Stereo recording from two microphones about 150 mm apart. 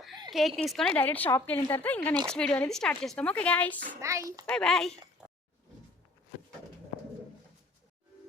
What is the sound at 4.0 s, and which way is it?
Speech, 20° right (ahead or behind).